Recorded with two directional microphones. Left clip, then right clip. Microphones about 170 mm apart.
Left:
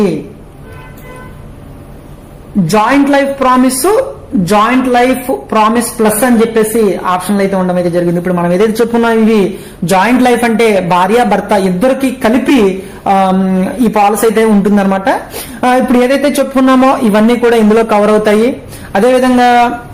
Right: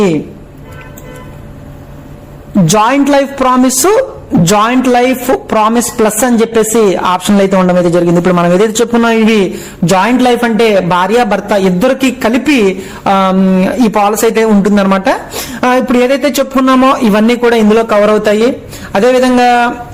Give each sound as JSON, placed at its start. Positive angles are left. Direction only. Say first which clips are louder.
{"t": 2.7, "sound": "a woman's voice", "louder": "even", "side_deg": -35}
{"t": 8.8, "sound": "a man's voice", "louder": "even", "side_deg": -20}
{"t": 17.8, "sound": "a man's voice", "louder": "even", "side_deg": 0}